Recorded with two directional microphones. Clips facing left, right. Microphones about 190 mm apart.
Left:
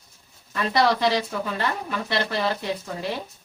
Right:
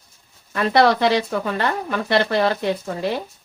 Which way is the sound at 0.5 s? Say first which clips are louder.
Right 5 dB; 60° right (ahead or behind).